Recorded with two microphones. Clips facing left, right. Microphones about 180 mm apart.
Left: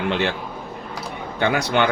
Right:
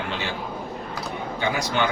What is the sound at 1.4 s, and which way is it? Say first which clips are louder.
Speech: left 6 dB; 65° left (ahead or behind).